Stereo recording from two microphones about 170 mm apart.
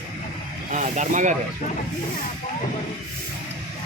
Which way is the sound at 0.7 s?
45° right (ahead or behind).